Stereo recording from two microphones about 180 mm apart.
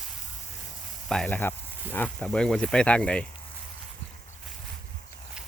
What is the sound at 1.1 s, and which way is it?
Speech, 5° left (ahead or behind).